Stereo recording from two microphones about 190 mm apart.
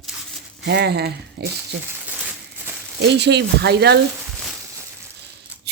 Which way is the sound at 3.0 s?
65° right (ahead or behind).